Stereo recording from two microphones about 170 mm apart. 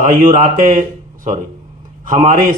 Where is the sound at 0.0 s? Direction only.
50° right (ahead or behind).